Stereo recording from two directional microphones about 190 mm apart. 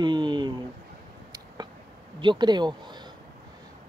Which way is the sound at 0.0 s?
25° right (ahead or behind).